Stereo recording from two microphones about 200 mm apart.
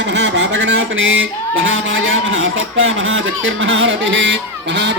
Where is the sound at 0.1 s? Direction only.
65° right (ahead or behind).